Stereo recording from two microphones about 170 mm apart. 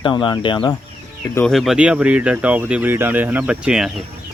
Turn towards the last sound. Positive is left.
turn(degrees=-5)  # may be behind; listen again after turning